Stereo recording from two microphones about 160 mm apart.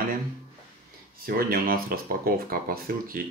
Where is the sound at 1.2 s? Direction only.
70° right (ahead or behind).